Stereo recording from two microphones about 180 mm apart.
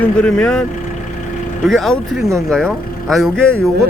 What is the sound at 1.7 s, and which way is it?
Speech, centre (ahead or behind).